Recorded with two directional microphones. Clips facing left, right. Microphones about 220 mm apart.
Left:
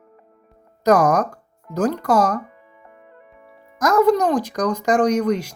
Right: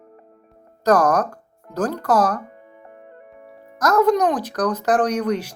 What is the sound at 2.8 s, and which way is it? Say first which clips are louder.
Music: right 3 dB; 40° right (ahead or behind).